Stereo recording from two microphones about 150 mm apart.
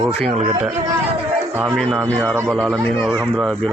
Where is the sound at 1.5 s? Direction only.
10° right (ahead or behind).